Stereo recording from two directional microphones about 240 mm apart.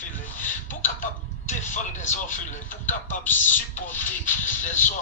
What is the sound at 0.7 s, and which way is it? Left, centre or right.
Speech, left.